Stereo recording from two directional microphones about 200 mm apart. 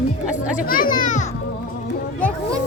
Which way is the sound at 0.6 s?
45° left (ahead or behind).